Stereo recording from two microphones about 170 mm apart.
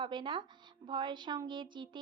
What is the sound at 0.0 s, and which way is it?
Speech, 30° right (ahead or behind).